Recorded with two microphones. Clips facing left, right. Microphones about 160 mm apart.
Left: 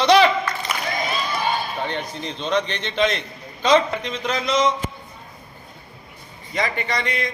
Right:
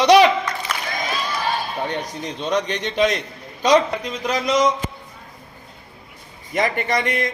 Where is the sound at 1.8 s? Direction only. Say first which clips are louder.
Right 1 dB; 10° right (ahead or behind).